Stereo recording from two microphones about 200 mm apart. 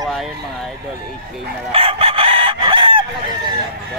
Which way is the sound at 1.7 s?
30° right (ahead or behind).